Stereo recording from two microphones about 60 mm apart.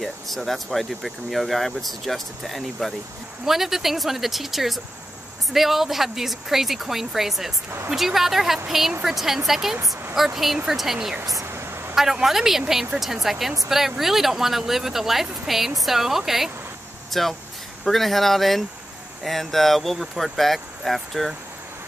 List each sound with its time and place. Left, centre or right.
0.0 s speech: centre
11.4 s a sound: right
11.9 s speech: centre